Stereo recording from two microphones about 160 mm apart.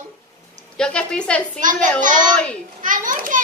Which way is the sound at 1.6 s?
55° right (ahead or behind).